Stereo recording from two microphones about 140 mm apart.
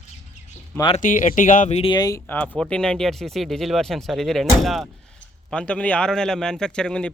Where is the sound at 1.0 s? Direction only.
65° left (ahead or behind).